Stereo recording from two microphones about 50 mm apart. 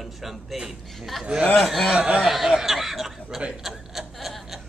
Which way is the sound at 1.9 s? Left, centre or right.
Right.